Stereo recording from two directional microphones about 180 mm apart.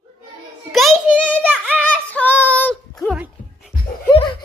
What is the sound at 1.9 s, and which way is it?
Child singing, 10° left (ahead or behind).